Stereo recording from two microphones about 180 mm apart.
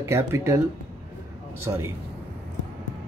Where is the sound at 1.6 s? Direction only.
15° right (ahead or behind).